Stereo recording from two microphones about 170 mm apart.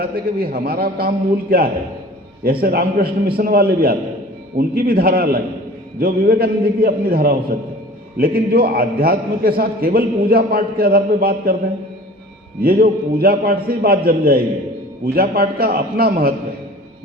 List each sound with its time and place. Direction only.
0.0 s a man's voice: 60° right (ahead or behind)
12.6 s a man's voice: 60° right (ahead or behind)